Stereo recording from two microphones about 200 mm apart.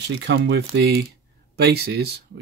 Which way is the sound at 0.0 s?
55° right (ahead or behind).